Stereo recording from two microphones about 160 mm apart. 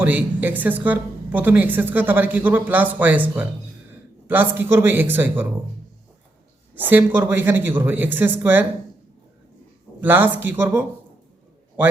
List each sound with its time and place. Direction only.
0.0 s a woman's voice: 10° right (ahead or behind)
6.7 s a woman's voice: 10° right (ahead or behind)
10.0 s a woman's voice: 10° right (ahead or behind)